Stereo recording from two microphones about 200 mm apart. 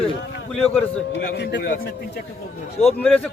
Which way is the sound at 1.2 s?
55° left (ahead or behind).